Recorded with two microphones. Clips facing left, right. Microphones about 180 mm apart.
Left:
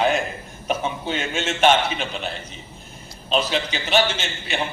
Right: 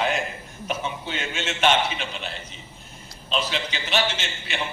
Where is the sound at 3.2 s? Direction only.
45° left (ahead or behind).